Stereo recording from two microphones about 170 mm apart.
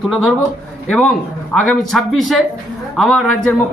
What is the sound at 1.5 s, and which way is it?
A man's voice, 5° left (ahead or behind).